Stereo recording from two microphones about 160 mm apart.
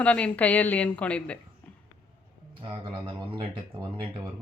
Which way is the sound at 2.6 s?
35° right (ahead or behind).